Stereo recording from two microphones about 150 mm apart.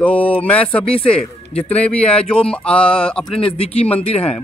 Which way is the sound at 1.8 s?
10° left (ahead or behind).